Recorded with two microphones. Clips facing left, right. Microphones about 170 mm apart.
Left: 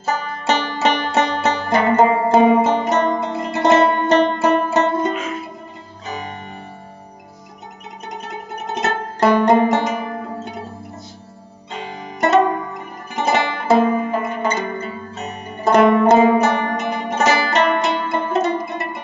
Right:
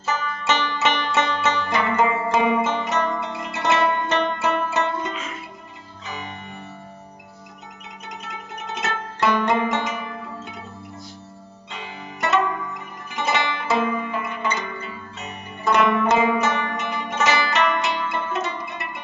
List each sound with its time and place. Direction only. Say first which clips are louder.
0.0 s music: left 3 dB; 40° left (ahead or behind)
8.1 s music: left 6 dB; 45° left (ahead or behind)
11.7 s zither: left 6 dB; 40° left (ahead or behind)